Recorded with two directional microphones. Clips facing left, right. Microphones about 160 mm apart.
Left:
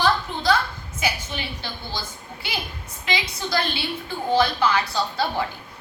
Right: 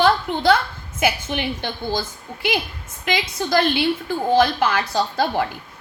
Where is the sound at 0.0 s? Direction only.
60° right (ahead or behind).